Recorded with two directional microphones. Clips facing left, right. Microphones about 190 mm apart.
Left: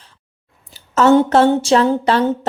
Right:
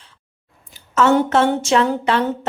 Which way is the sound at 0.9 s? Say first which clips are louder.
Left 4 dB; 35° left (ahead or behind).